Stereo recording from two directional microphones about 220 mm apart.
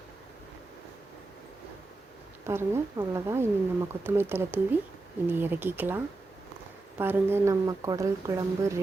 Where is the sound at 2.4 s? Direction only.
10° right (ahead or behind).